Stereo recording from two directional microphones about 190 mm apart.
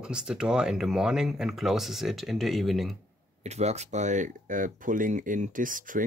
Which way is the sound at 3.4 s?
35° right (ahead or behind).